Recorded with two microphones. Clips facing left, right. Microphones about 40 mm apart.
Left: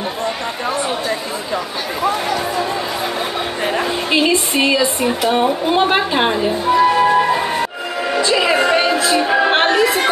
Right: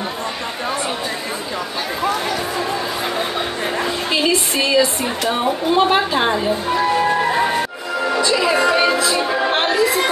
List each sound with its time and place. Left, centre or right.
3.6 s a sound: left
4.7 s a woman's voice: centre
8.2 s music: left